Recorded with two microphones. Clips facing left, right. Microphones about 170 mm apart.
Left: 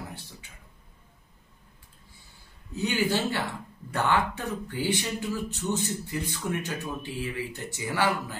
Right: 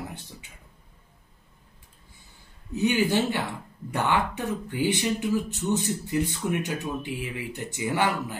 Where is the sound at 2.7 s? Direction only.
20° right (ahead or behind).